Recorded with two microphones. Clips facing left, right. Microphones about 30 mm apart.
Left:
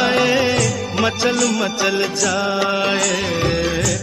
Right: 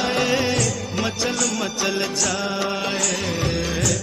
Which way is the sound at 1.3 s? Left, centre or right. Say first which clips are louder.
Left 6 dB; centre.